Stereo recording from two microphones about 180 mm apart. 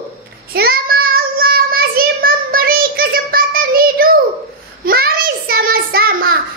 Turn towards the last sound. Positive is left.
turn(degrees=-55)  # may be behind; listen again after turning